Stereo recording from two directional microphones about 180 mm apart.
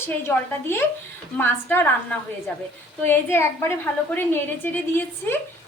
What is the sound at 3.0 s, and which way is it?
A woman's voice, 15° left (ahead or behind).